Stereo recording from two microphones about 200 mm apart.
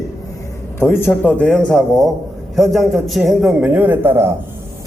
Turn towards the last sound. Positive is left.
turn(degrees=-10)  # may be behind; listen again after turning